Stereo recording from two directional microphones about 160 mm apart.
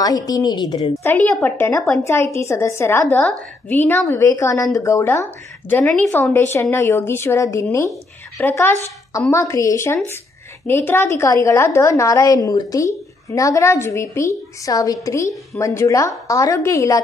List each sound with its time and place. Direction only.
0.0 s a woman's voice: 25° left (ahead or behind)
1.4 s a woman's voice: 15° left (ahead or behind)